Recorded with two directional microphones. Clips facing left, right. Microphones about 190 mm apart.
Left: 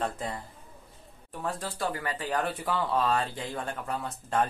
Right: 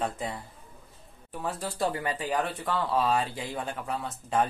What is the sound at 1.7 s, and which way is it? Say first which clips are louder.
Speech: right 3 dB; 25° right (ahead or behind).